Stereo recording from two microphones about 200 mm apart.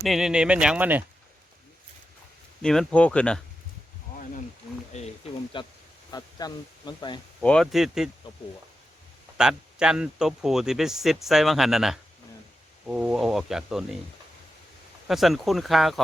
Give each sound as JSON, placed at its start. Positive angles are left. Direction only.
{"t": 0.0, "sound": "speech", "side_deg": 0}
{"t": 2.6, "sound": "speech", "side_deg": 5}
{"t": 4.9, "sound": "speech", "side_deg": 35}
{"t": 7.4, "sound": "speech", "side_deg": 0}
{"t": 9.4, "sound": "speech", "side_deg": -5}
{"t": 15.0, "sound": "speech", "side_deg": 0}